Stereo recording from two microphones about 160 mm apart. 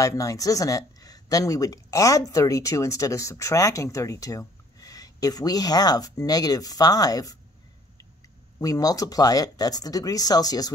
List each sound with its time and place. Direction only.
0.0 s speech: 20° left (ahead or behind)
8.5 s speech: 25° left (ahead or behind)